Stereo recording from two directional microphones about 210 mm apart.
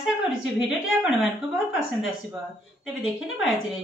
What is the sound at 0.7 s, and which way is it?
Speech, centre (ahead or behind).